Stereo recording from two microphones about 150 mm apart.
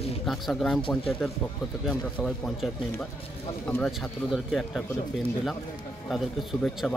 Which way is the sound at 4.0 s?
Centre (ahead or behind).